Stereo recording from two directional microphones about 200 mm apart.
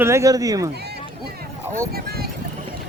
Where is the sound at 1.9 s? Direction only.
50° right (ahead or behind).